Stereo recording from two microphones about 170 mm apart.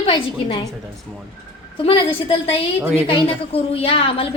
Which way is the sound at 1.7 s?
30° left (ahead or behind).